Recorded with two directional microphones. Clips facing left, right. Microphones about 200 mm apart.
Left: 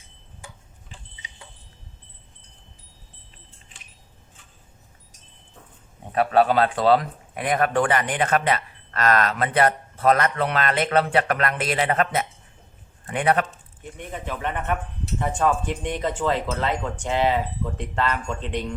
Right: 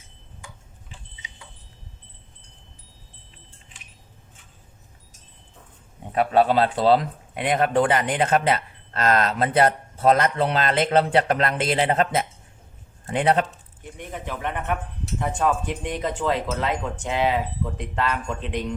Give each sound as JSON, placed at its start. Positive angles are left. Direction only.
{"t": 6.1, "sound": "speech", "side_deg": -20}
{"t": 14.1, "sound": "speech", "side_deg": 0}